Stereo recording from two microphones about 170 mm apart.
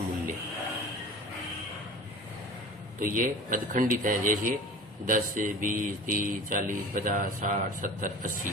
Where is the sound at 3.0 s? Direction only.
55° right (ahead or behind).